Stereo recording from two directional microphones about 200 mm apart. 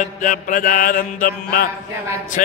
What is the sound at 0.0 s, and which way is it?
Speech, 45° left (ahead or behind).